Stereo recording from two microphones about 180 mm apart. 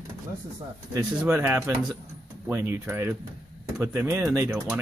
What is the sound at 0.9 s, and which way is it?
Speech, 10° right (ahead or behind).